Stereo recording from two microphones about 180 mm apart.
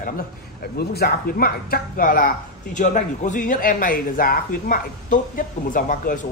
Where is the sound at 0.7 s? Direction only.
60° left (ahead or behind).